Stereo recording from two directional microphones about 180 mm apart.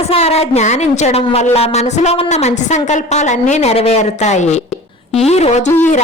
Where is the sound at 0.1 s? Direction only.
35° left (ahead or behind).